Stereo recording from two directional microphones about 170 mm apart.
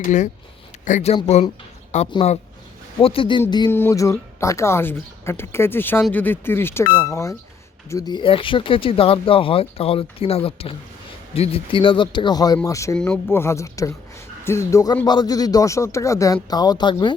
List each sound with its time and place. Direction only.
0.0 s speech: 45° left (ahead or behind)
3.0 s speech: 30° left (ahead or behind)
3.7 s speech: 15° left (ahead or behind)
13.0 s speech: 5° left (ahead or behind); by 17.2 s 25° left (ahead or behind)